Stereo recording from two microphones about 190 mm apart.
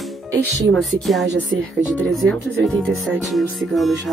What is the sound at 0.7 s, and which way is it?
Speech, centre (ahead or behind).